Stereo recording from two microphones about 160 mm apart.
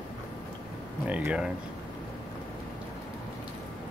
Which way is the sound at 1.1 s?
10° right (ahead or behind).